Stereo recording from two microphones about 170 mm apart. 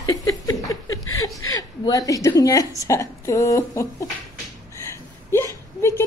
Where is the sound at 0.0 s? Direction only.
20° left (ahead or behind).